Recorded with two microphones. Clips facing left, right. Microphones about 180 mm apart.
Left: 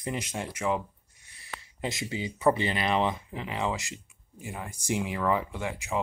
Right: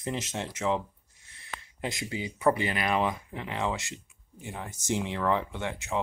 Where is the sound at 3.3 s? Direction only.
15° left (ahead or behind).